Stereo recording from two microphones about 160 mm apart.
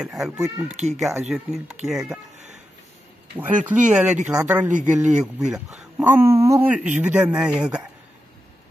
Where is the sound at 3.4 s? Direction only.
10° right (ahead or behind).